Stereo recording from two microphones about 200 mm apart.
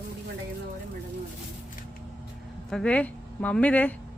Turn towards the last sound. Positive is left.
turn(degrees=5)  # may be behind; listen again after turning